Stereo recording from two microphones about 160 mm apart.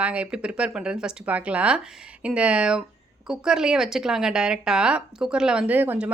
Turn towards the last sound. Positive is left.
turn(degrees=-10)  # may be behind; listen again after turning